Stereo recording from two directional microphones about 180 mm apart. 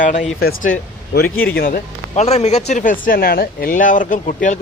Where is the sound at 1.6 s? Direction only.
50° left (ahead or behind).